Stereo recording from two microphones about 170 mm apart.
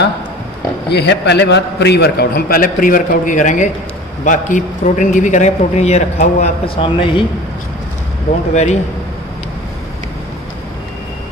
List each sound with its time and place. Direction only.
0.8 s a man's voice: 80° left; by 7.2 s 30° left (ahead or behind)